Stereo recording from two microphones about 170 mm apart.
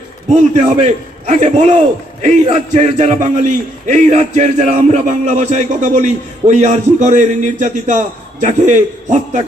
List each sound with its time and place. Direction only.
0.5 s a man's voice: 45° right (ahead or behind)